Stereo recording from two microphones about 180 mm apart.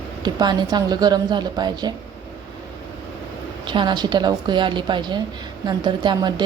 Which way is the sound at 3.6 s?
25° right (ahead or behind).